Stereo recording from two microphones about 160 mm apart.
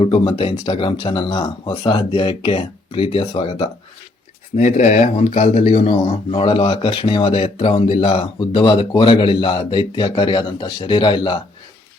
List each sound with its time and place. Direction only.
0.0 s speech: 35° left (ahead or behind)
4.5 s speech: 50° left (ahead or behind); by 11.3 s 30° left (ahead or behind)